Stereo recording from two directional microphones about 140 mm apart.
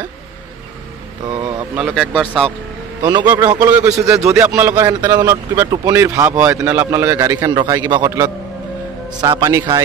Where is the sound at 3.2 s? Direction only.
20° right (ahead or behind).